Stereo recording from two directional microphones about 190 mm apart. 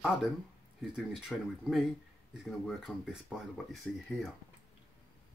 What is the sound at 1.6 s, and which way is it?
Speech, centre (ahead or behind).